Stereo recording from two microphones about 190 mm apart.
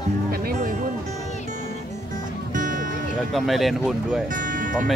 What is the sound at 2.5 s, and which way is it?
Music, 45° right (ahead or behind).